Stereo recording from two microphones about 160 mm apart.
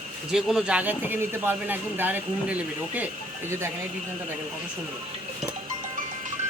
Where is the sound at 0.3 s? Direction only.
5° right (ahead or behind).